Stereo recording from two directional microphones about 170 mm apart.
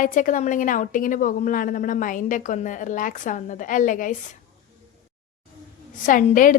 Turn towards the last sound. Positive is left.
turn(degrees=50)  # may be behind; listen again after turning